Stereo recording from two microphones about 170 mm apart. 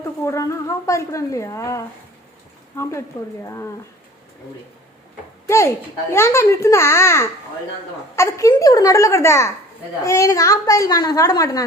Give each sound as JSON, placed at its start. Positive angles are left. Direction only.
{"t": 0.2, "sound": "a child's voice", "side_deg": 15}
{"t": 3.4, "sound": "a child's voice", "side_deg": 15}
{"t": 5.5, "sound": "a child's voice", "side_deg": 15}